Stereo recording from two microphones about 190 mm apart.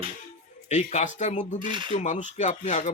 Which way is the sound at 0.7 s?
40° left (ahead or behind).